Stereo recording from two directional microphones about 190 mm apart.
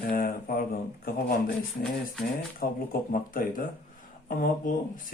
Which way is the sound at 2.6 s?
50° left (ahead or behind).